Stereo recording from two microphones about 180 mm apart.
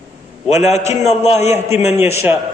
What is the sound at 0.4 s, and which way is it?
A man's voice, 40° left (ahead or behind).